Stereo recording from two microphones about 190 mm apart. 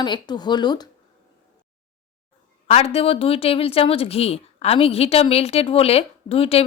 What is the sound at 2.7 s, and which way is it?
A woman's voice, 30° left (ahead or behind).